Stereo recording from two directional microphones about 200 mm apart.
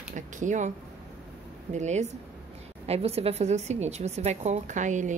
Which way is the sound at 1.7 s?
35° right (ahead or behind).